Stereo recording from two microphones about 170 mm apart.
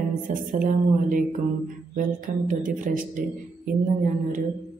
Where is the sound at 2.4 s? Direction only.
50° right (ahead or behind).